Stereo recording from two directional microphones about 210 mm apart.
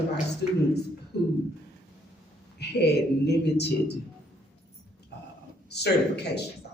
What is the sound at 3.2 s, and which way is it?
Speech, 55° left (ahead or behind).